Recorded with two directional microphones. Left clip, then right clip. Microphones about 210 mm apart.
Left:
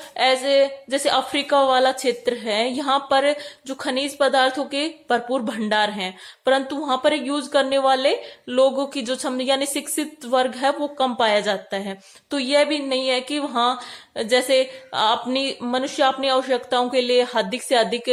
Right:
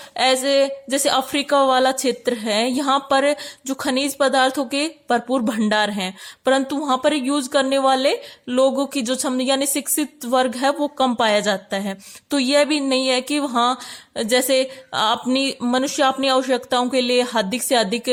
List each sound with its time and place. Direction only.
0.2 s speech: 40° right (ahead or behind)